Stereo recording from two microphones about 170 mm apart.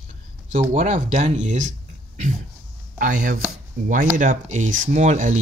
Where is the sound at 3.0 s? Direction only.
50° right (ahead or behind).